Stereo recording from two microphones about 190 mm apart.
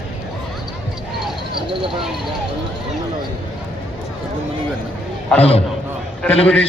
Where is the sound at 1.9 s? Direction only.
Centre (ahead or behind).